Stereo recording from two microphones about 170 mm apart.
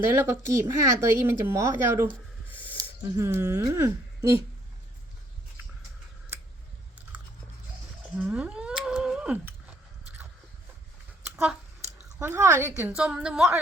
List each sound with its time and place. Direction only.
0.0 s speech: 15° right (ahead or behind)
8.2 s whale vocalization: 10° right (ahead or behind)
12.0 s a woman's voice: 15° right (ahead or behind)